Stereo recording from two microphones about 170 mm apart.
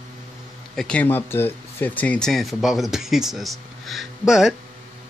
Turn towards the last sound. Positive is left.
turn(degrees=0)  # may be behind; listen again after turning